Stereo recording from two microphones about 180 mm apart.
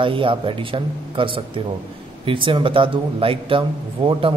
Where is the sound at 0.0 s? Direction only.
30° right (ahead or behind).